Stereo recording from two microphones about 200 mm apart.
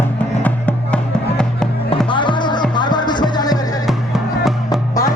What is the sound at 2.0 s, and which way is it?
Music, 25° left (ahead or behind).